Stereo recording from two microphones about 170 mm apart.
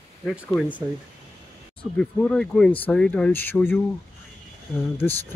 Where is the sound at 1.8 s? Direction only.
5° left (ahead or behind).